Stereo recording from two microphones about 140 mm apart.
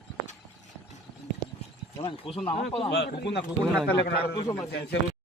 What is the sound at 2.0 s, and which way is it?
Speech, 40° left (ahead or behind).